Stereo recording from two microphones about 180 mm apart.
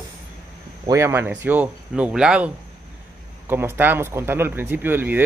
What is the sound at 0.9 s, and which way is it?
Speech, 15° right (ahead or behind).